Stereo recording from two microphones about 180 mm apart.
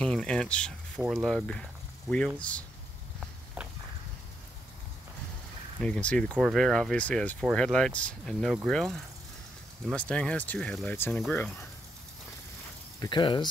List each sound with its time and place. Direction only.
0.0 s speech: 5° left (ahead or behind)
3.6 s walk: 10° right (ahead or behind)
5.8 s speech: 5° left (ahead or behind)
13.0 s speech: 25° left (ahead or behind)